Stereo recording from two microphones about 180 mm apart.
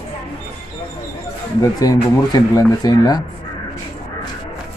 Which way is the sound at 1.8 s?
20° left (ahead or behind).